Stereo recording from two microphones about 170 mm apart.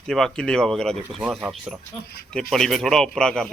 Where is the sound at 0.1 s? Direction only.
5° left (ahead or behind).